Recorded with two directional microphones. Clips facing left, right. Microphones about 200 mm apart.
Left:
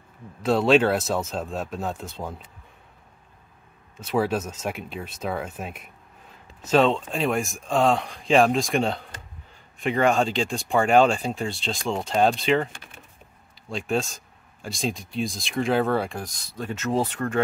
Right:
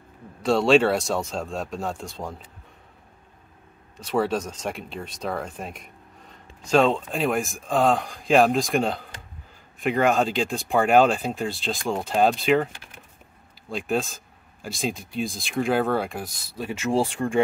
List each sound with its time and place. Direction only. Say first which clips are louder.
0.4 s speech: right 1 dB; centre (ahead or behind)
3.9 s speech: even; 5° left (ahead or behind); by 17.4 s 10° right (ahead or behind)